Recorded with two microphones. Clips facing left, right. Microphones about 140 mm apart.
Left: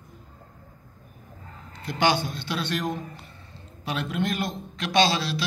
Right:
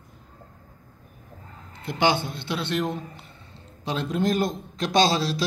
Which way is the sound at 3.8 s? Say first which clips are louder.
Right 3 dB; 35° right (ahead or behind).